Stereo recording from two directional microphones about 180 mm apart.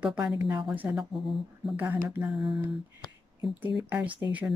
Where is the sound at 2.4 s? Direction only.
25° right (ahead or behind).